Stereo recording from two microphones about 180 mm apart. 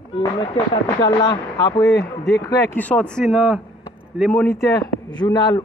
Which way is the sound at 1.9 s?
65° left (ahead or behind).